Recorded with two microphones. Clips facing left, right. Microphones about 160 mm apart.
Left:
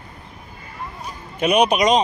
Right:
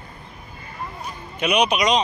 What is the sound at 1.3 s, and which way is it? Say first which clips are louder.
Speech: left 3 dB; 45° left (ahead or behind).